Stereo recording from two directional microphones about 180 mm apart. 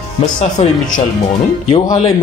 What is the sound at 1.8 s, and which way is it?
Speech, 20° left (ahead or behind).